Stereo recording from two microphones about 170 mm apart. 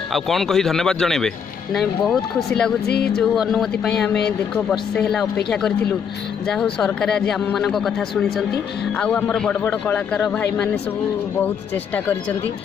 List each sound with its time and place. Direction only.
0.1 s a man's voice: centre (ahead or behind)
2.9 s speech: 65° left (ahead or behind)
3.2 s a man's voice: centre (ahead or behind)